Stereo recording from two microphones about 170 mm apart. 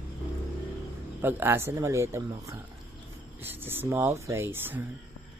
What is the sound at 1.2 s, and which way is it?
Speech, 15° right (ahead or behind).